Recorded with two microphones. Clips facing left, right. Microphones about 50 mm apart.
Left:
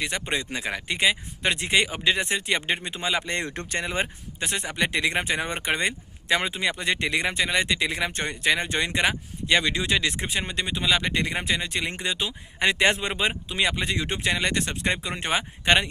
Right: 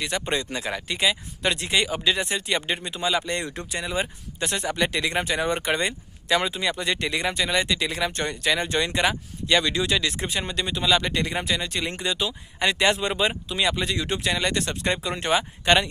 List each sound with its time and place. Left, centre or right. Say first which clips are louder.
0.3 s speech: right 1 dB; left
4.4 s speech: right 2 dB; left